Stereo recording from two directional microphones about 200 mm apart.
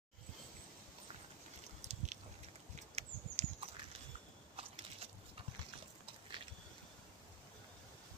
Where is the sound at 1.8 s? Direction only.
35° right (ahead or behind).